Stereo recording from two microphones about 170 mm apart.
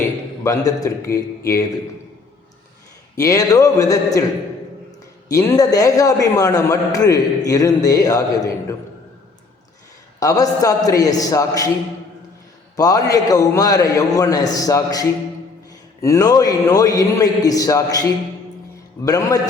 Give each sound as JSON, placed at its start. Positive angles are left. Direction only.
{"t": 0.0, "sound": "a man's voice", "side_deg": 20}
{"t": 3.2, "sound": "a man's voice", "side_deg": 20}
{"t": 5.3, "sound": "a man's voice", "side_deg": 20}
{"t": 10.2, "sound": "a man's voice", "side_deg": 20}
{"t": 12.7, "sound": "a man's voice", "side_deg": 20}
{"t": 19.0, "sound": "a man's voice", "side_deg": 20}